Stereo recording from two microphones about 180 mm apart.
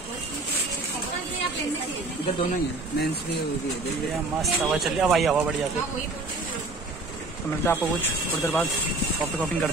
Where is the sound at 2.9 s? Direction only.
65° left (ahead or behind).